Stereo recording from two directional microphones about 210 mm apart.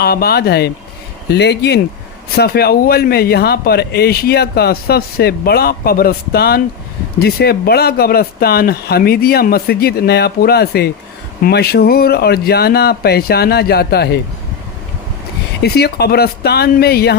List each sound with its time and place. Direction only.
0.0 s speech: 45° left (ahead or behind)
15.6 s speech: 50° left (ahead or behind)